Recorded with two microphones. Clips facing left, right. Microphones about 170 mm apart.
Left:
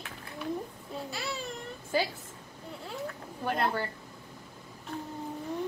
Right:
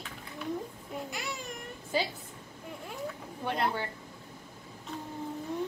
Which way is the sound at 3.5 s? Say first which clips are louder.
Left 1 dB; 20° right (ahead or behind).